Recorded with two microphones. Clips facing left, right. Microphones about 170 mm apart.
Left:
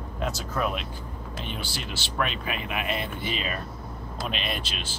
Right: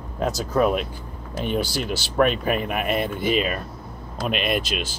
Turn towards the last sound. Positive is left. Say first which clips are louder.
# right 9 dB
turn(degrees=-50)  # may be behind; listen again after turning